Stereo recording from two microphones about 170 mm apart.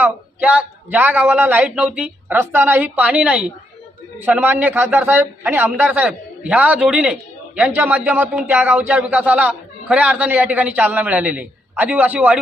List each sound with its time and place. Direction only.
0.0 s a man's voice: 10° right (ahead or behind)